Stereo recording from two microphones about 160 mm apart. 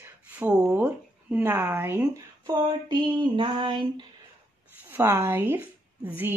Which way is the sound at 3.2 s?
30° right (ahead or behind).